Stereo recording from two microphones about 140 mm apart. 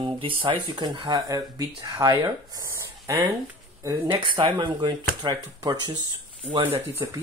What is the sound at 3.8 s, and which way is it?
Speech, 30° right (ahead or behind).